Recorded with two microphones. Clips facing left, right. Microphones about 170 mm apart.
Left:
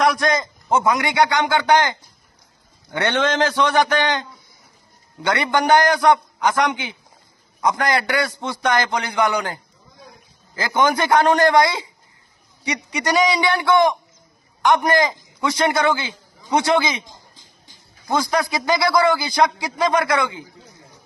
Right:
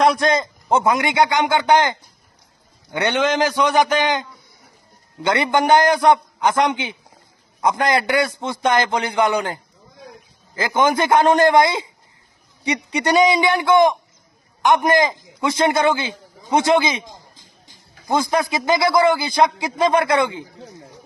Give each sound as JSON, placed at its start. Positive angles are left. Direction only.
{"t": 0.0, "sound": "a man's voice", "side_deg": -25}
{"t": 18.1, "sound": "a man's voice", "side_deg": -20}